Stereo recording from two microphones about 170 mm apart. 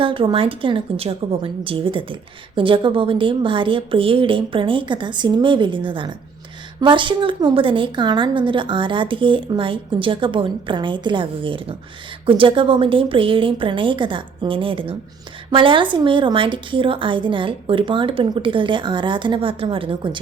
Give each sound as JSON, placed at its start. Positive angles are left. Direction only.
{"t": 0.0, "sound": "a woman's voice", "side_deg": -30}